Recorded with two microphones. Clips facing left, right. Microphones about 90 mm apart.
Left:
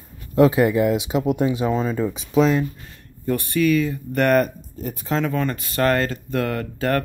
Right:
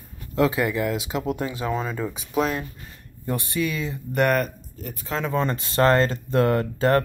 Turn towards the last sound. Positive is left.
turn(degrees=-30)  # may be behind; listen again after turning